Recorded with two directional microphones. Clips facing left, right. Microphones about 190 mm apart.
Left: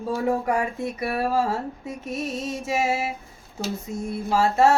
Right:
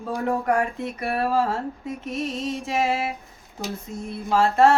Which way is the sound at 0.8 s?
10° left (ahead or behind).